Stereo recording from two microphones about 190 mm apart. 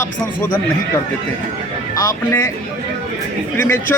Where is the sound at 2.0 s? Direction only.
15° left (ahead or behind).